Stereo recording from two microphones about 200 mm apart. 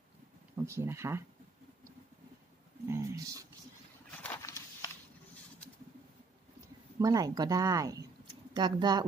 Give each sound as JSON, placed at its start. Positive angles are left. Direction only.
{"t": 0.6, "sound": "speech", "side_deg": -15}
{"t": 2.9, "sound": "speech", "side_deg": -15}
{"t": 4.2, "sound": "a sound", "side_deg": 10}
{"t": 7.0, "sound": "speech", "side_deg": -20}